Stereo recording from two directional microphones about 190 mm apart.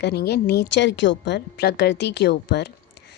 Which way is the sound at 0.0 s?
55° left (ahead or behind).